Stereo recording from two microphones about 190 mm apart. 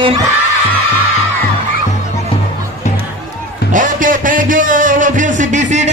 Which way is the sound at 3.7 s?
45° right (ahead or behind).